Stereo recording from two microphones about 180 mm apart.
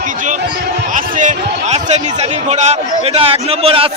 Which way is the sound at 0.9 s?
45° right (ahead or behind).